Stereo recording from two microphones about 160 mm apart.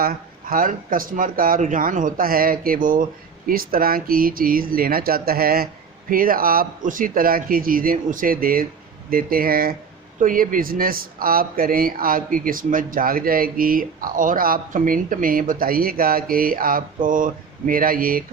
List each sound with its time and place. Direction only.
0.0 s speech: 65° right (ahead or behind)